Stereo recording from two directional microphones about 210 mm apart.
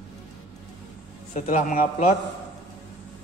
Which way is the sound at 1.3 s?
35° left (ahead or behind).